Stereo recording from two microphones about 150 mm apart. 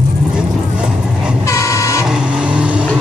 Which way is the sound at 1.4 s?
20° left (ahead or behind).